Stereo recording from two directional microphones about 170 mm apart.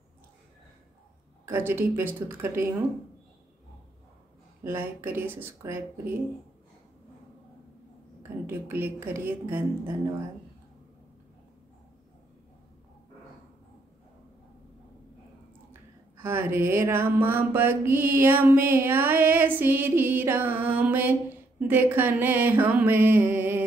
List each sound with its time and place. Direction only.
1.4 s mantra: 15° right (ahead or behind)
4.6 s mantra: 15° right (ahead or behind)
8.2 s mantra: 15° right (ahead or behind)
16.2 s mantra: 15° right (ahead or behind)